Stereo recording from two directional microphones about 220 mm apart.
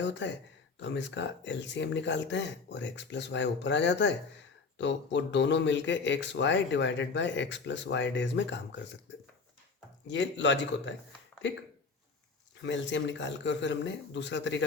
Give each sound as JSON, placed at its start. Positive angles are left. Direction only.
{"t": 0.0, "sound": "speech", "side_deg": 55}
{"t": 10.1, "sound": "speech", "side_deg": 55}
{"t": 12.6, "sound": "speech", "side_deg": 55}